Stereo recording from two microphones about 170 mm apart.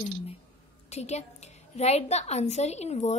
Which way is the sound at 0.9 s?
40° left (ahead or behind).